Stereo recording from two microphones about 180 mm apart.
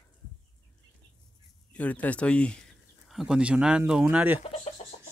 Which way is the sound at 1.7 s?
10° left (ahead or behind).